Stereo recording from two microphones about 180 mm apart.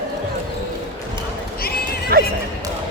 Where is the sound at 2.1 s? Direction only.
60° right (ahead or behind).